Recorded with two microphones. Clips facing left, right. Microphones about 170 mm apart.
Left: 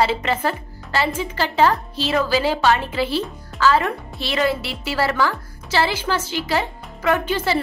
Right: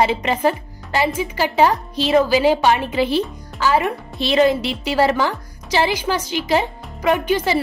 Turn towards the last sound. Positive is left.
turn(degrees=-15)  # may be behind; listen again after turning